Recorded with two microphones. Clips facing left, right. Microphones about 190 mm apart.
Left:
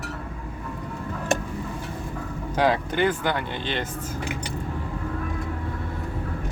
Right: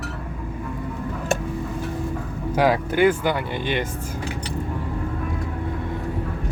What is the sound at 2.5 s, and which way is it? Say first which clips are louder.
Speech: right 3 dB; 10° right (ahead or behind).